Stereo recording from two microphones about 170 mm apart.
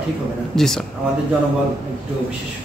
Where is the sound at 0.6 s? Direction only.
Centre (ahead or behind).